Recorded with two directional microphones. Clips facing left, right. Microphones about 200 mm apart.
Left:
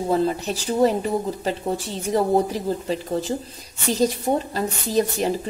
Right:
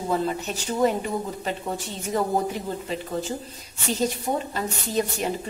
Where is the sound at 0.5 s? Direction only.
35° left (ahead or behind).